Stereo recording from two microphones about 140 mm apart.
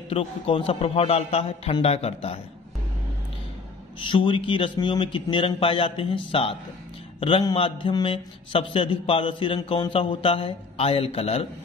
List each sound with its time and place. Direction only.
0.1 s a man's voice: 40° left (ahead or behind)
4.0 s a man's voice: 35° left (ahead or behind)